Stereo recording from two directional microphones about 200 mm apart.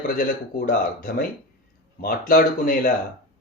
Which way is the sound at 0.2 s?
45° left (ahead or behind).